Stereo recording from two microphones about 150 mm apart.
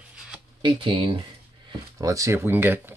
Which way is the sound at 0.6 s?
35° right (ahead or behind).